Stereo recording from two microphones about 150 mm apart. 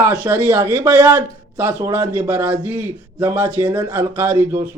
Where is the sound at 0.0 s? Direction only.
10° right (ahead or behind).